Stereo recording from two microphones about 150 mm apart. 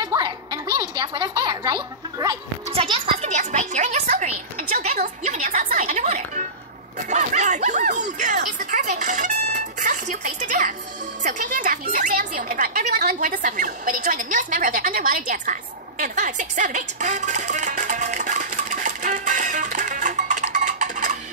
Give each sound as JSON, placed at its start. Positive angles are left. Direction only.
{"t": 0.0, "sound": "music", "side_deg": -25}
{"t": 2.7, "sound": "music", "side_deg": -40}
{"t": 12.9, "sound": "a sound", "side_deg": -85}